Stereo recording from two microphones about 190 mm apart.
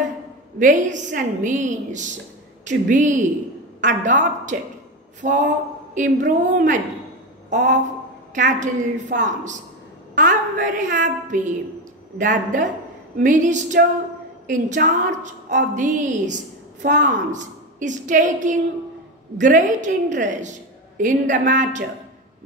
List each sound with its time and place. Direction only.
0.6 s a woman's voice: 40° right (ahead or behind)
7.4 s a sound: 40° right (ahead or behind)
8.4 s a woman's voice: 45° right (ahead or behind)